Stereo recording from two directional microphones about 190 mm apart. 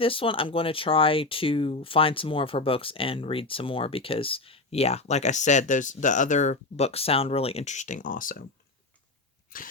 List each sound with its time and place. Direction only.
0.0 s speech: 30° left (ahead or behind); by 8.4 s 45° left (ahead or behind)